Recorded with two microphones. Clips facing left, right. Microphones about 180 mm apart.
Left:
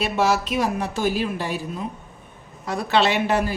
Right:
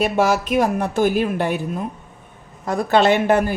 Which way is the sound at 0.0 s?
50° right (ahead or behind).